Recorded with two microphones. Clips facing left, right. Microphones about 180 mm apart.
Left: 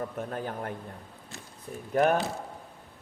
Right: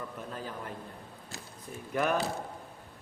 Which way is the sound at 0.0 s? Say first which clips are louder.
Left 6 dB; 50° left (ahead or behind).